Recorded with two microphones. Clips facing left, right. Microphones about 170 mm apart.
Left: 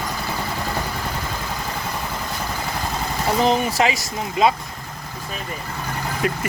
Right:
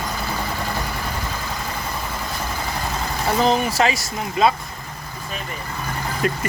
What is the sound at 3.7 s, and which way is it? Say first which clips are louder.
Speech: even; 15° left (ahead or behind).